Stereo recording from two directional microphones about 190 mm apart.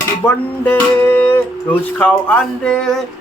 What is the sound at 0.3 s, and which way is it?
Speech, 10° left (ahead or behind).